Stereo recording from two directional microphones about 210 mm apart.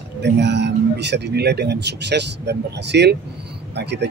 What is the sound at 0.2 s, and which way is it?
Speech, 55° right (ahead or behind).